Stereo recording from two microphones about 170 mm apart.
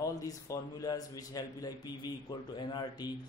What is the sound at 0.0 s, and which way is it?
A man's voice, 20° left (ahead or behind).